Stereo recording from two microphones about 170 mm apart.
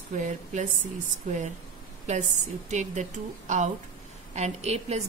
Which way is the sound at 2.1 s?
45° right (ahead or behind).